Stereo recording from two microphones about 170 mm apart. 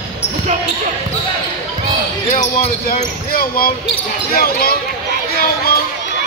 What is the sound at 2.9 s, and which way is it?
Basketball bounce, 60° left (ahead or behind).